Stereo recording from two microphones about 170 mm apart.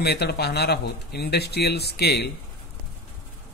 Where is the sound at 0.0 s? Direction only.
70° left (ahead or behind).